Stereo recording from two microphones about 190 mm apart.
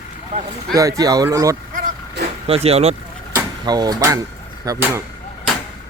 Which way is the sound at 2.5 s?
30° right (ahead or behind).